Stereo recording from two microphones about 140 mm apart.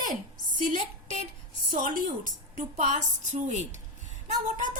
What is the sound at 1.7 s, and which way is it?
A woman's voice, 70° right (ahead or behind).